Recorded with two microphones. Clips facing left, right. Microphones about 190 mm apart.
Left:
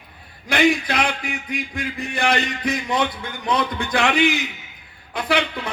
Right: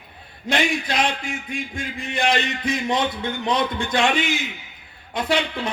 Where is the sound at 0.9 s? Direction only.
65° left (ahead or behind).